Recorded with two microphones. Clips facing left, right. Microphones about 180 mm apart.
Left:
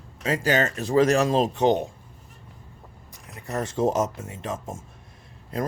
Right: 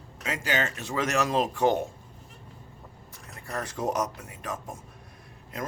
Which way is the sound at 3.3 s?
20° left (ahead or behind).